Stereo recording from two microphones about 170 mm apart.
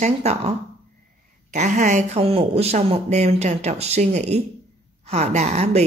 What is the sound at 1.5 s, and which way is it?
A woman's voice, 45° right (ahead or behind).